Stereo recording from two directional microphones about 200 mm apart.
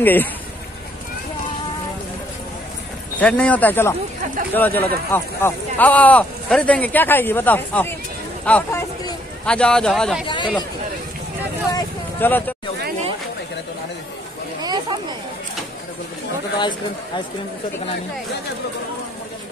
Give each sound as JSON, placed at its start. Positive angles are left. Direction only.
{"t": 0.0, "sound": "speech", "side_deg": 10}
{"t": 3.2, "sound": "a man's voice", "side_deg": 5}
{"t": 10.2, "sound": "speech", "side_deg": 25}
{"t": 11.7, "sound": "speech", "side_deg": 10}
{"t": 14.6, "sound": "a sound", "side_deg": -20}
{"t": 16.5, "sound": "speech", "side_deg": 25}